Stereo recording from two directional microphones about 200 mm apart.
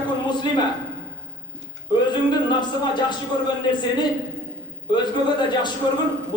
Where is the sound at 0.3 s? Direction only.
20° left (ahead or behind).